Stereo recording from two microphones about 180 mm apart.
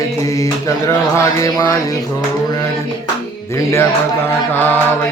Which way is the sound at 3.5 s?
15° left (ahead or behind).